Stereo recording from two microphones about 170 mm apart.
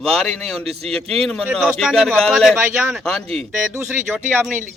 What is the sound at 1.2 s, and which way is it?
A man's voice, 5° left (ahead or behind).